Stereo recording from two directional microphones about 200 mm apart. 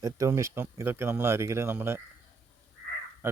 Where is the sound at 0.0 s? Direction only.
15° right (ahead or behind).